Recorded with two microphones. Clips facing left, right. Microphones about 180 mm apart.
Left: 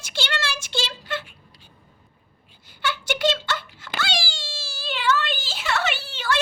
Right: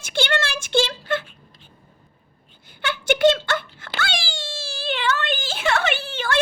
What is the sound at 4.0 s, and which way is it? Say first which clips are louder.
Cat: right 1 dB; 55° right (ahead or behind).